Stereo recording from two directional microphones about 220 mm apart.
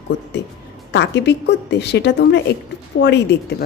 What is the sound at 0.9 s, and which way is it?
A woman's voice, 50° left (ahead or behind).